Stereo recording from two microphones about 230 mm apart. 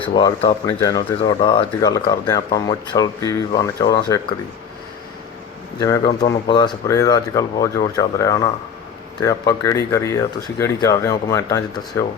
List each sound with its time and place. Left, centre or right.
0.0 s speech: left
5.8 s speech: centre